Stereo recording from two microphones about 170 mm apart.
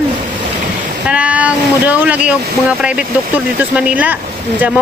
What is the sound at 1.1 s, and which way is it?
Speech, 5° right (ahead or behind).